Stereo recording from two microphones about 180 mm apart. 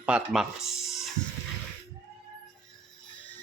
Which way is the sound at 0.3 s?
Centre (ahead or behind).